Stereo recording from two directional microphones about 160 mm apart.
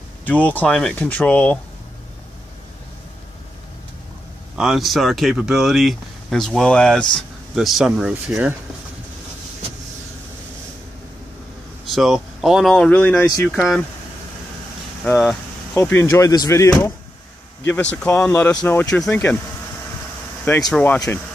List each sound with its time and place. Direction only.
0.2 s speech: 10° left (ahead or behind)
4.6 s speech: centre (ahead or behind)
11.9 s speech: centre (ahead or behind)
13.6 s speech: centre (ahead or behind)
15.7 s speech: 10° left (ahead or behind)
20.7 s speech: 10° left (ahead or behind)